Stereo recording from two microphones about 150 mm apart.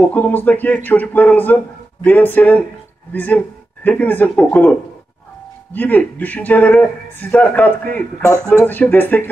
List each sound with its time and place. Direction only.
0.0 s speech: 10° left (ahead or behind)
8.2 s speech: 15° right (ahead or behind)
8.6 s speech: 15° left (ahead or behind)